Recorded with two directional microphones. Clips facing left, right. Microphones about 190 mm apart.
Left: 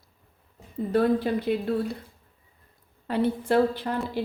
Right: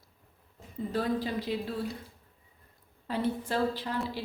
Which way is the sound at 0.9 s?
60° left (ahead or behind).